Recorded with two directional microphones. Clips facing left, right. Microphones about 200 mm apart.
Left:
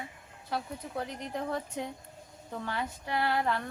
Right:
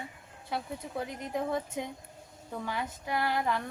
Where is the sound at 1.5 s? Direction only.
15° right (ahead or behind).